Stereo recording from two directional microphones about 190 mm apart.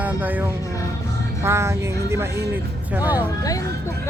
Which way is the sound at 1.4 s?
15° right (ahead or behind).